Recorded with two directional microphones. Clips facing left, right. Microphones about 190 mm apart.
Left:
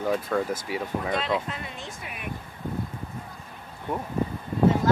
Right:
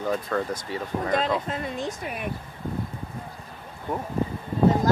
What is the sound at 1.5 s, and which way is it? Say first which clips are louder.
Speech: right 7 dB; 40° right (ahead or behind).